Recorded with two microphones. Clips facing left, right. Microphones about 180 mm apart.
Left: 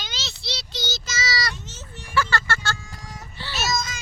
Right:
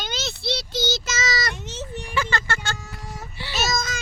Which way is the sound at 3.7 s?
50° right (ahead or behind).